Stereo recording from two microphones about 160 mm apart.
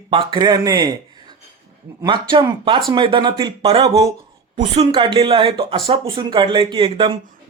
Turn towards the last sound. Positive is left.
turn(degrees=-30)  # may be behind; listen again after turning